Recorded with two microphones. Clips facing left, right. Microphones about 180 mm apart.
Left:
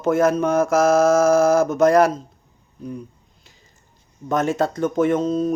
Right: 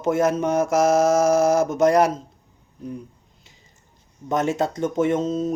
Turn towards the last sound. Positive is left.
turn(degrees=-25)  # may be behind; listen again after turning